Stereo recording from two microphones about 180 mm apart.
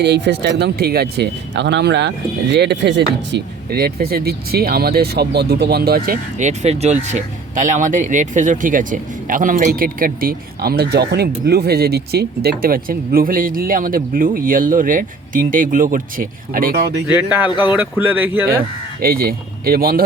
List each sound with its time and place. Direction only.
0.0 s speech: 70° right (ahead or behind)
6.4 s speech: 40° right (ahead or behind)
17.2 s speech: 10° right (ahead or behind)
19.0 s speech: 55° right (ahead or behind)